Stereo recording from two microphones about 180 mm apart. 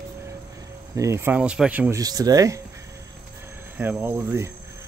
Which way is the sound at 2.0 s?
20° right (ahead or behind).